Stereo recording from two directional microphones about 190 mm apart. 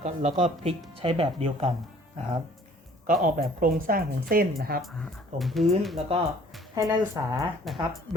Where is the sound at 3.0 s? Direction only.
45° right (ahead or behind).